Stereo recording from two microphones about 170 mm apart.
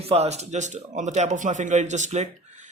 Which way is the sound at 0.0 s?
35° right (ahead or behind).